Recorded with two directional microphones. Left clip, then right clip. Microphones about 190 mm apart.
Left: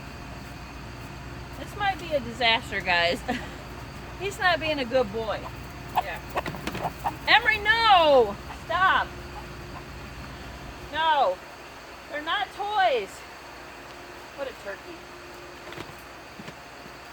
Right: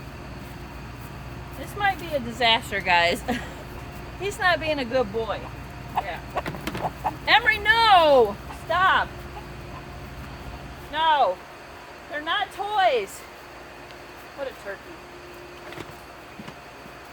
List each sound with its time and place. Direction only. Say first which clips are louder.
1.8 s a sound: right 3 dB; 40° right (ahead or behind)
2.4 s speech: right 4 dB; 45° right (ahead or behind)
4.2 s speech: right 2 dB; 25° right (ahead or behind)
6.0 s speech: left 1 dB; 50° left (ahead or behind)
6.4 s fowl: right 1 dB; 10° right (ahead or behind)
7.3 s speech: right 2 dB; 15° right (ahead or behind)
8.7 s speech: right 2 dB; 35° right (ahead or behind)
10.9 s speech: right 2 dB; 40° right (ahead or behind)